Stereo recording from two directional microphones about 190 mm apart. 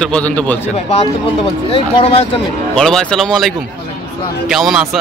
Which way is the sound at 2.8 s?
5° left (ahead or behind).